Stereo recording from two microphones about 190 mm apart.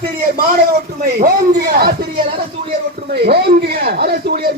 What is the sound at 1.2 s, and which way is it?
Speech, 55° right (ahead or behind).